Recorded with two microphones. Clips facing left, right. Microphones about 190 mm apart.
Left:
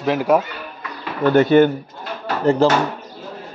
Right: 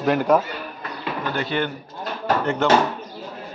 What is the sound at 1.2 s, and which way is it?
Speech, 50° left (ahead or behind).